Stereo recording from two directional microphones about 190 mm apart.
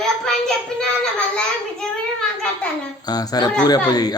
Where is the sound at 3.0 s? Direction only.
20° left (ahead or behind).